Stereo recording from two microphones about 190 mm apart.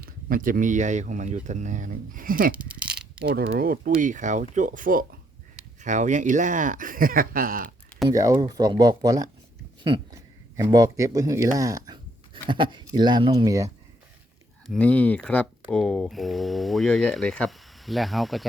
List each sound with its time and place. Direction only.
0.0 s speech: 50° right (ahead or behind)
2.6 s a sound: 5° right (ahead or behind)
3.2 s speech: 55° right (ahead or behind)
8.0 s speech: 20° right (ahead or behind)
10.6 s speech: 20° right (ahead or behind)
14.7 s speech: 5° left (ahead or behind)